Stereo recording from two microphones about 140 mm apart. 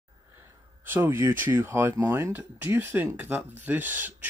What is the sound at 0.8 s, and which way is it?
Speech, 15° right (ahead or behind).